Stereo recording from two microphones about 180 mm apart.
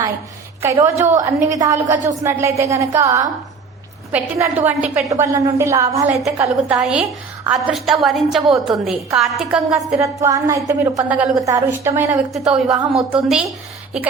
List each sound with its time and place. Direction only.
0.6 s a woman's voice: 15° right (ahead or behind)
6.7 s a woman's voice: 5° right (ahead or behind)
10.0 s a woman's voice: 20° right (ahead or behind)
11.1 s a woman's voice: 10° right (ahead or behind)
12.3 s a woman's voice: centre (ahead or behind)